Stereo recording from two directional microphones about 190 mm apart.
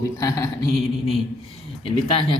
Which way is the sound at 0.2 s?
15° left (ahead or behind).